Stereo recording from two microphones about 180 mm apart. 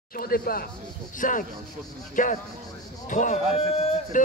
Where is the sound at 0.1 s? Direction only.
55° left (ahead or behind).